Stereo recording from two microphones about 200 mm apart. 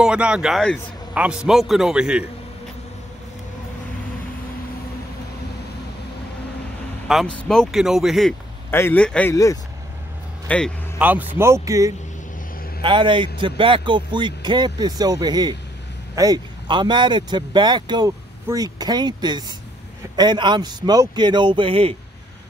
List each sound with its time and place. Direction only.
0.0 s a man's voice: 5° right (ahead or behind)
7.1 s a man's voice: centre (ahead or behind)
8.6 s a man's voice: 10° left (ahead or behind)
11.0 s speech: 10° right (ahead or behind); by 21.9 s 25° right (ahead or behind)